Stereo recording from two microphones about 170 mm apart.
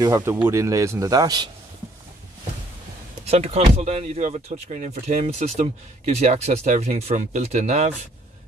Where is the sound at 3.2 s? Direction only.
40° right (ahead or behind).